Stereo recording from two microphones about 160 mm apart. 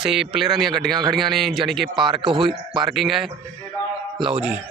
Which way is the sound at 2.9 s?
Centre (ahead or behind).